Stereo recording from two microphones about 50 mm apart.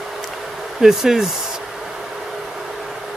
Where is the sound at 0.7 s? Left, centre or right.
Centre.